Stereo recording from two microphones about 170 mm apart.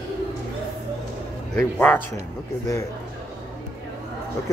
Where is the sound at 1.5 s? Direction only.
5° left (ahead or behind).